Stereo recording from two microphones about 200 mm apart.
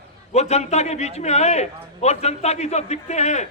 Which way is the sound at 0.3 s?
30° left (ahead or behind).